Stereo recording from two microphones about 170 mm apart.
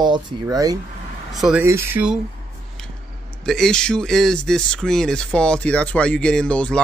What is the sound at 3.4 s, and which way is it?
Speech, 5° left (ahead or behind).